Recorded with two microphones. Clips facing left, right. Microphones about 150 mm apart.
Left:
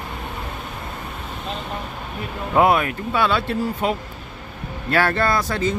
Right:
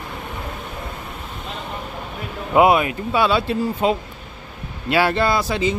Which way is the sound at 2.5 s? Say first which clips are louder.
Right 2 dB; 15° right (ahead or behind).